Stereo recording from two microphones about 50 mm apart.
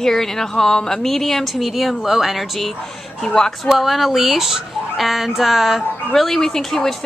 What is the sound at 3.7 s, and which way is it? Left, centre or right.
Speech, centre.